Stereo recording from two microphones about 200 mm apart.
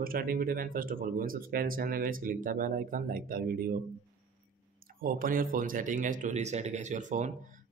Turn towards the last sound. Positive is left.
turn(degrees=-35)  # may be behind; listen again after turning